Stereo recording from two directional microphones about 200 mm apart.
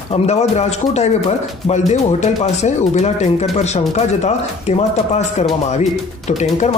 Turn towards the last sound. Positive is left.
turn(degrees=35)  # may be behind; listen again after turning